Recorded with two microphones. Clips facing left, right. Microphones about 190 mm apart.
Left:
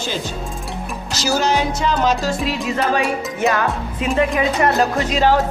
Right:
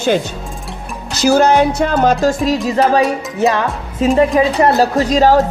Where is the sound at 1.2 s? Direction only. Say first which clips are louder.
Right 8 dB; 55° right (ahead or behind); by 3.6 s 35° right (ahead or behind).